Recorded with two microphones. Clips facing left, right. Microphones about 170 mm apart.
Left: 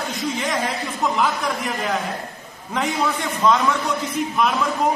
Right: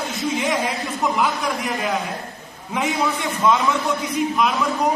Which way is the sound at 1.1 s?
Centre (ahead or behind).